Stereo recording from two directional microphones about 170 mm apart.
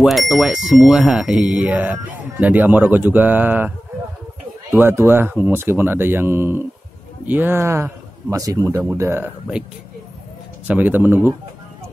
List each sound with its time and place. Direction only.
0.0 s speech: centre (ahead or behind)
10.7 s speech: 10° right (ahead or behind)